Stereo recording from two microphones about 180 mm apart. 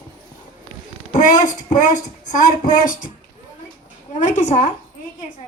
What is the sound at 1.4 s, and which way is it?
Speech, 45° left (ahead or behind).